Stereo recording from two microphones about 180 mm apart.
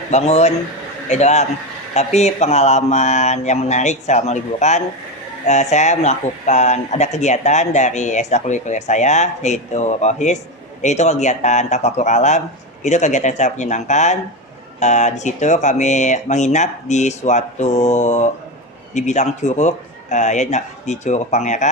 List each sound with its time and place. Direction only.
0.1 s speech: 35° left (ahead or behind)